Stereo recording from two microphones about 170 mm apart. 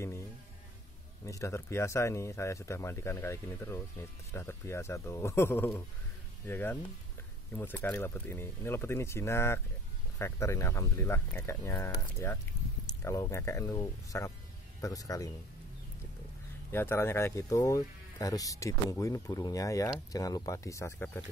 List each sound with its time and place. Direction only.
1.2 s speech: 20° left (ahead or behind)
16.7 s speech: 15° left (ahead or behind)